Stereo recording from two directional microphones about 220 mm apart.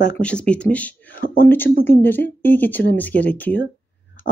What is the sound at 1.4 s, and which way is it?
A woman's voice, 10° left (ahead or behind).